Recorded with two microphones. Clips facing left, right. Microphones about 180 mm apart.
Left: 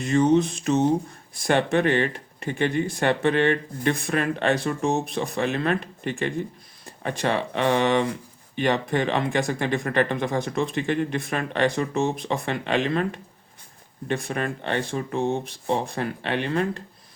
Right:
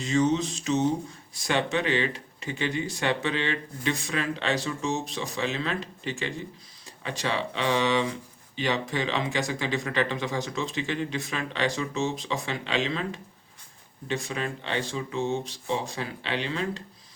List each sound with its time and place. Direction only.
0.0 s speech: 55° left (ahead or behind)